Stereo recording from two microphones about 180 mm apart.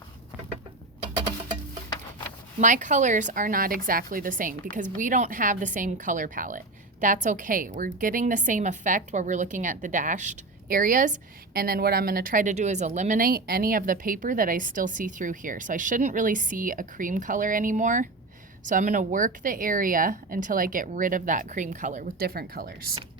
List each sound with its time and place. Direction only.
2.6 s a woman's voice: 45° right (ahead or behind)